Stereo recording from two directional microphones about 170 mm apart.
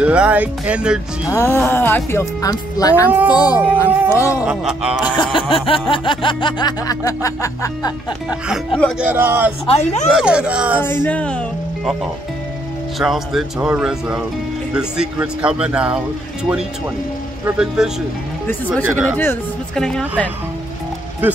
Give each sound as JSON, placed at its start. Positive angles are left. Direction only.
{"t": 0.0, "sound": "speech", "side_deg": -5}
{"t": 1.3, "sound": "speech", "side_deg": 15}
{"t": 3.1, "sound": "speech", "side_deg": -10}
{"t": 4.1, "sound": "speech", "side_deg": 15}
{"t": 4.4, "sound": "speech", "side_deg": -5}
{"t": 5.0, "sound": "music", "side_deg": 30}
{"t": 8.5, "sound": "speech", "side_deg": 5}
{"t": 9.0, "sound": "speech", "side_deg": -10}
{"t": 9.7, "sound": "speech", "side_deg": 40}
{"t": 10.1, "sound": "speech", "side_deg": -5}
{"t": 10.8, "sound": "speech", "side_deg": 10}
{"t": 13.0, "sound": "speech", "side_deg": 0}
{"t": 17.6, "sound": "speech", "side_deg": -5}
{"t": 18.8, "sound": "speech", "side_deg": 10}